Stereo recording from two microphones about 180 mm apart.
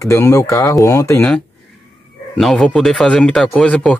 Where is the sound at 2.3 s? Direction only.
Centre (ahead or behind).